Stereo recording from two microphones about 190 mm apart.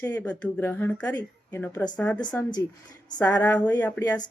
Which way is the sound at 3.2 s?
10° left (ahead or behind).